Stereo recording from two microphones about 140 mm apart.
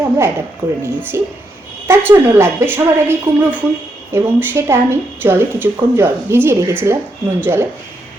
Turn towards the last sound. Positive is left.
turn(degrees=-15)  # may be behind; listen again after turning